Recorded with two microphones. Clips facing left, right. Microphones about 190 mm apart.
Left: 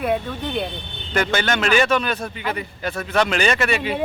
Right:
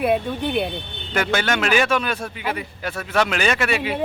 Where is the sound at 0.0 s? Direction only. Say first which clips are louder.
Right 2 dB; 15° right (ahead or behind).